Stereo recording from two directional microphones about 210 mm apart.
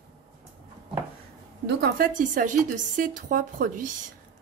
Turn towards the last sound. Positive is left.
turn(degrees=-40)  # may be behind; listen again after turning